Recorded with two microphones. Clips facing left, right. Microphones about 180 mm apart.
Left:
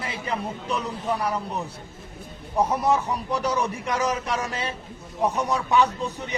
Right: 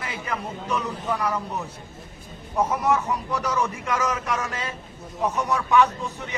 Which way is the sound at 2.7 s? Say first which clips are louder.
Even; 35° left (ahead or behind).